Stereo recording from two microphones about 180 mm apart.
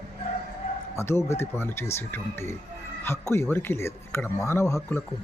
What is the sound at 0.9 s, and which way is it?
Speech, 15° left (ahead or behind).